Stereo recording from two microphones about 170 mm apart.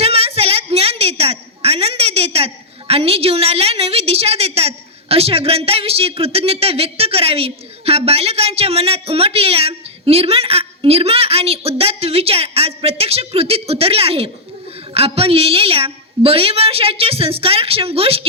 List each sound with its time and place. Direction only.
0.0 s a woman's voice: 35° right (ahead or behind)